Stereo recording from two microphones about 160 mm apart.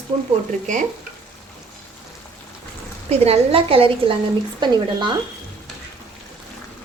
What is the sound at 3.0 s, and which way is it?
Speech, 40° right (ahead or behind).